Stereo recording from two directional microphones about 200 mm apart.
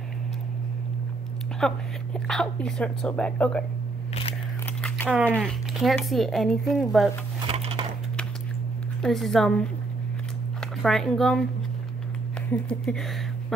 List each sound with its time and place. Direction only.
1.6 s speech: centre (ahead or behind)
4.1 s scissors: 30° left (ahead or behind)
4.8 s a sound: 10° left (ahead or behind)
5.4 s speech: centre (ahead or behind)
7.4 s a sound: 30° right (ahead or behind)
9.0 s speech: centre (ahead or behind)
10.8 s speech: centre (ahead or behind)
12.4 s speech: 5° left (ahead or behind)